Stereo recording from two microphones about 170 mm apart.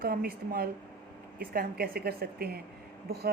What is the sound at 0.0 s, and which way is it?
Speech, 60° right (ahead or behind).